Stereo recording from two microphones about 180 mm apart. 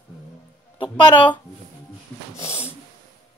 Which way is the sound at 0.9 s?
25° left (ahead or behind).